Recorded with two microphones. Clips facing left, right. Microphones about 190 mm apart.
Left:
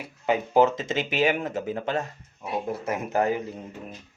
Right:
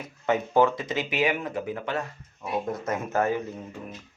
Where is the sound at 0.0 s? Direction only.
15° left (ahead or behind).